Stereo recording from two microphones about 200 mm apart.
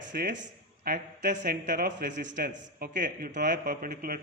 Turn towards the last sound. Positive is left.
turn(degrees=-45)  # may be behind; listen again after turning